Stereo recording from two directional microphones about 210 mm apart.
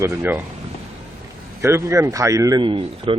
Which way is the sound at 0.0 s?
10° right (ahead or behind).